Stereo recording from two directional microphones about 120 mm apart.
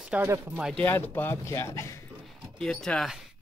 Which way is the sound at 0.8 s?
15° left (ahead or behind).